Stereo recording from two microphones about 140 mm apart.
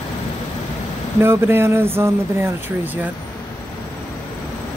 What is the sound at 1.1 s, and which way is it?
Speech, 15° right (ahead or behind).